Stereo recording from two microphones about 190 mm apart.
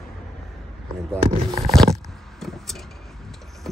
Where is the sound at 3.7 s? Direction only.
Centre (ahead or behind).